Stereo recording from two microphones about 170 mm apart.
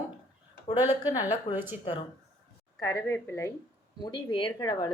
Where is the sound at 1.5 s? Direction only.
30° left (ahead or behind).